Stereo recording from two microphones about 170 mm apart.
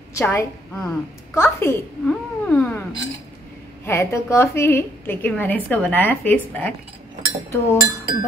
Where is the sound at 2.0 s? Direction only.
5° left (ahead or behind).